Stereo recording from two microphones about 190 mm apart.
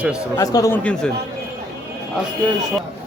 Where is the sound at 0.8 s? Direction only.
5° left (ahead or behind).